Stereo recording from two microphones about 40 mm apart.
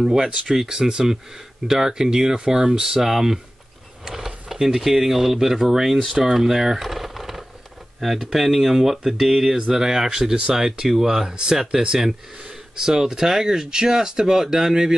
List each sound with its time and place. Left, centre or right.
0.0 s speech: centre
4.0 s a sound: centre
4.6 s speech: centre